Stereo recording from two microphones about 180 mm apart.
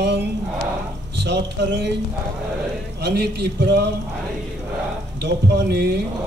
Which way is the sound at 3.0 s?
65° right (ahead or behind).